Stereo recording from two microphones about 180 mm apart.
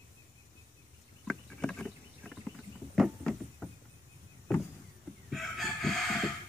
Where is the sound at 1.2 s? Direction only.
5° left (ahead or behind).